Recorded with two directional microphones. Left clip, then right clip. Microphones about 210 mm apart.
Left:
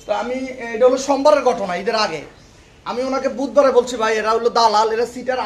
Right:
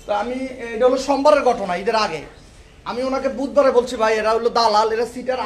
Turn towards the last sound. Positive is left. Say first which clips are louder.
# left 1 dB
turn(degrees=0)  # may be behind; listen again after turning